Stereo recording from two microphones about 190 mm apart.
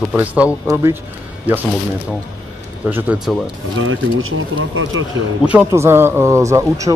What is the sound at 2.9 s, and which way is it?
Speech, 5° right (ahead or behind).